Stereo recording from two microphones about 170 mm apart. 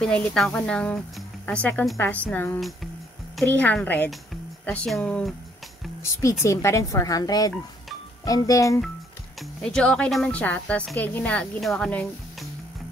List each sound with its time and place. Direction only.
0.0 s speech: 5° left (ahead or behind)
6.4 s speech: 15° left (ahead or behind)
9.4 s a woman's voice: 5° left (ahead or behind)